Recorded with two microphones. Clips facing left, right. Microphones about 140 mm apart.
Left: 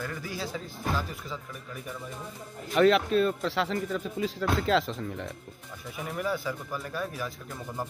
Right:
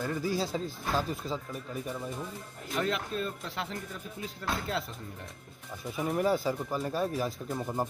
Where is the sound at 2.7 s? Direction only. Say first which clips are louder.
Left 10 dB; 90° left.